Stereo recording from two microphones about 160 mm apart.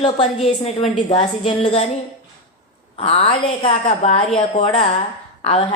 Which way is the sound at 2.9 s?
35° left (ahead or behind).